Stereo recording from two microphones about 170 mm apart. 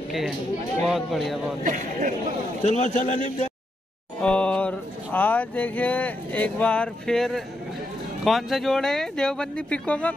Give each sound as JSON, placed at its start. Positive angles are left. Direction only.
{"t": 0.8, "sound": "speech", "side_deg": 0}
{"t": 1.6, "sound": "a man's voice", "side_deg": -50}
{"t": 2.6, "sound": "a man's voice", "side_deg": 45}
{"t": 4.2, "sound": "speech", "side_deg": 5}